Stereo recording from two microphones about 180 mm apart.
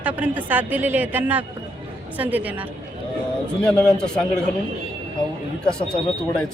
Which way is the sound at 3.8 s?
5° left (ahead or behind).